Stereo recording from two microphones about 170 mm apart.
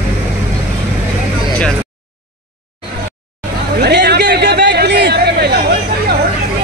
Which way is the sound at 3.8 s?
75° right (ahead or behind).